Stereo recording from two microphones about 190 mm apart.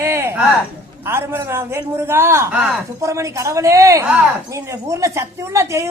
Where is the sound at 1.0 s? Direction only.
15° right (ahead or behind).